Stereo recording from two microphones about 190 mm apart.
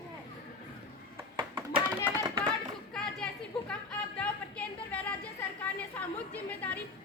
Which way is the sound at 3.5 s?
Centre (ahead or behind).